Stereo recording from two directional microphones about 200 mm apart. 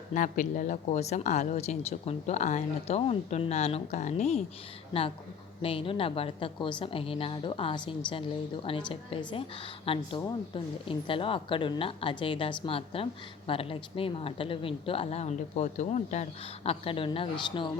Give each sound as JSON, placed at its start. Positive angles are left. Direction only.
{"t": 0.1, "sound": "speech", "side_deg": 40}
{"t": 5.6, "sound": "a woman's voice", "side_deg": 25}
{"t": 8.9, "sound": "a woman's voice", "side_deg": 25}